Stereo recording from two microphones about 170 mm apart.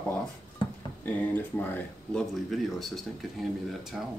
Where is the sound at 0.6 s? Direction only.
30° left (ahead or behind).